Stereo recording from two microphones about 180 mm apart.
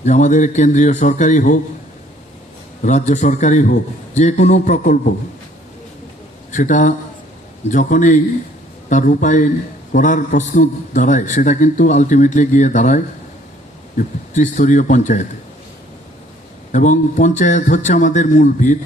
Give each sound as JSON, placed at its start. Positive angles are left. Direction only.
{"t": 0.0, "sound": "a man's voice", "side_deg": 40}
{"t": 2.8, "sound": "a man's voice", "side_deg": 40}
{"t": 6.5, "sound": "a man's voice", "side_deg": 45}
{"t": 16.7, "sound": "a man's voice", "side_deg": 45}